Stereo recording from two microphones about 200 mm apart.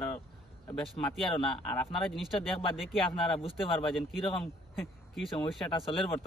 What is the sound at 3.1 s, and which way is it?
Speech, 25° left (ahead or behind).